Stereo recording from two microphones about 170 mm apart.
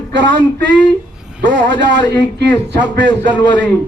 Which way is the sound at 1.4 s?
90° right.